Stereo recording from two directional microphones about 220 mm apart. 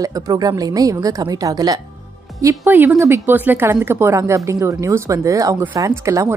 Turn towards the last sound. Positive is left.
turn(degrees=-15)  # may be behind; listen again after turning